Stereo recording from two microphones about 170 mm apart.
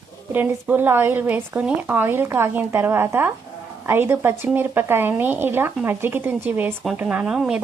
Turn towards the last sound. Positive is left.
turn(degrees=-5)  # may be behind; listen again after turning